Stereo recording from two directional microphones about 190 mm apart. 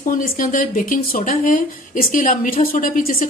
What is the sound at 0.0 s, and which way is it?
A woman's voice, 45° left (ahead or behind).